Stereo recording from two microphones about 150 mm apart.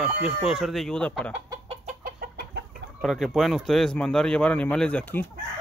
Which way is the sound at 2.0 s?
90° right.